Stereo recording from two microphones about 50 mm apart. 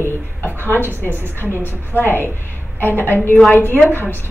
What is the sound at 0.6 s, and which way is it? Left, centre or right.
Speech, left.